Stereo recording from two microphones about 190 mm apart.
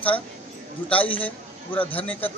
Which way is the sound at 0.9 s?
30° left (ahead or behind).